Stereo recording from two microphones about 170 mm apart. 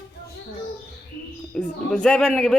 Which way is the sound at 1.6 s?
5° left (ahead or behind).